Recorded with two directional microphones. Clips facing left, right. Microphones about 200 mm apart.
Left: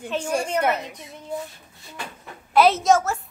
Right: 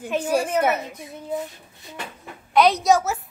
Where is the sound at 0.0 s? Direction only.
5° right (ahead or behind).